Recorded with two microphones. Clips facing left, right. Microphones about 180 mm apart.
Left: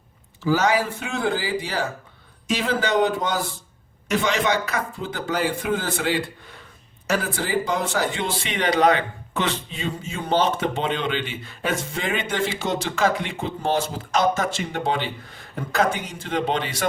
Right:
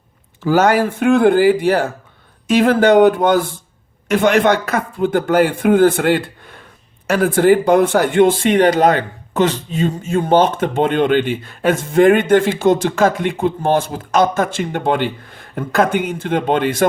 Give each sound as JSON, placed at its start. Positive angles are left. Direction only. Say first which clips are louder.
{"t": 0.4, "sound": "speech", "louder": "right 7 dB", "side_deg": -55}